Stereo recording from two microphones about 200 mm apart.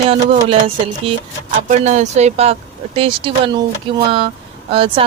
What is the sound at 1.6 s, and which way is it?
Speech, 35° right (ahead or behind).